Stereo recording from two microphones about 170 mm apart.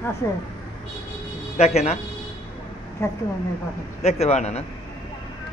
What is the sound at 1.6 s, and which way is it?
Speech, 40° left (ahead or behind).